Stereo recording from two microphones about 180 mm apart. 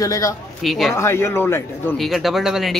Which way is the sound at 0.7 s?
Centre (ahead or behind).